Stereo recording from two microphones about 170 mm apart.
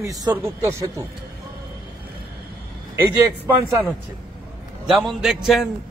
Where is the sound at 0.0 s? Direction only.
15° right (ahead or behind).